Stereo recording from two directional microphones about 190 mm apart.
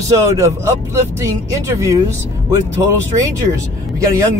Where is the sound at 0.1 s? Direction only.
15° right (ahead or behind).